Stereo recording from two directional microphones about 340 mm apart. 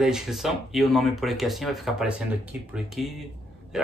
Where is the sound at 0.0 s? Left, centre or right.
Centre.